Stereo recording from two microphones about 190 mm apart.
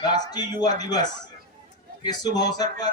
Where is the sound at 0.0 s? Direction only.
20° left (ahead or behind).